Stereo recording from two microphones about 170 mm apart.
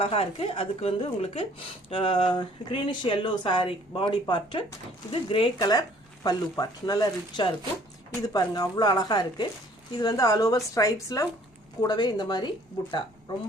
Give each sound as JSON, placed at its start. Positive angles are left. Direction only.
{"t": 0.0, "sound": "speech", "side_deg": 35}